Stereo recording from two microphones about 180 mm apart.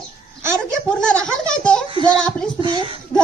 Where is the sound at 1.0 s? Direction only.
5° left (ahead or behind).